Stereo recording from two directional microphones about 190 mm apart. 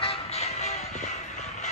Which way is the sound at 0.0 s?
30° left (ahead or behind).